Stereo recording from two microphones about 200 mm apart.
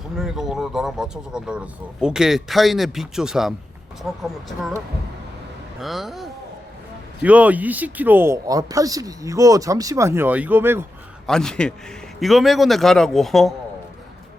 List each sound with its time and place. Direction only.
0.2 s speech: centre (ahead or behind)
5.8 s speech: centre (ahead or behind)
11.3 s speech: 5° left (ahead or behind)